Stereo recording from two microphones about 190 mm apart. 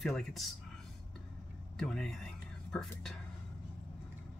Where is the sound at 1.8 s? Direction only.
5° left (ahead or behind).